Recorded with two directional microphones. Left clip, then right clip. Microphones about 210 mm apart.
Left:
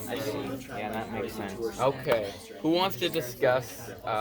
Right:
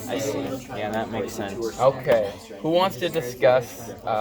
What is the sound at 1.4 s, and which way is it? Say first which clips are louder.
Speech: right 5 dB; 15° right (ahead or behind).